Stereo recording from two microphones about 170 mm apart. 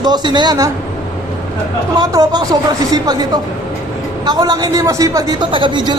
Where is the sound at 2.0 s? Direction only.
25° right (ahead or behind).